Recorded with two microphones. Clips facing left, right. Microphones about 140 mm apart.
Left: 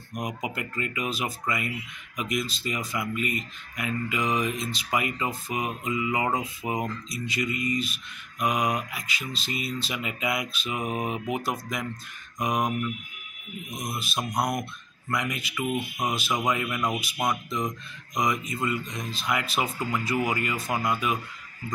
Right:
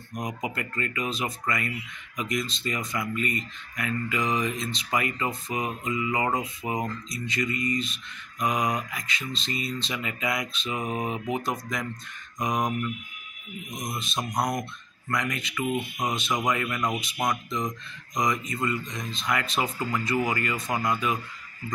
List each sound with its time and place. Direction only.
0.1 s speech: 10° left (ahead or behind)